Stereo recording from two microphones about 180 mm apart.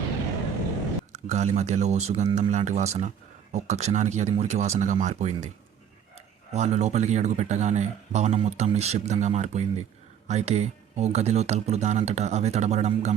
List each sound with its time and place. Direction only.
1.1 s speech: 40° right (ahead or behind)
6.5 s speech: 40° right (ahead or behind)